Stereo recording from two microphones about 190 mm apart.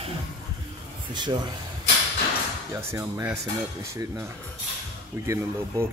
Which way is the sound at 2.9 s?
15° right (ahead or behind).